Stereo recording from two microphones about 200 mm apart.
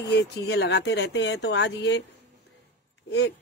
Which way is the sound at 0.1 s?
60° left (ahead or behind).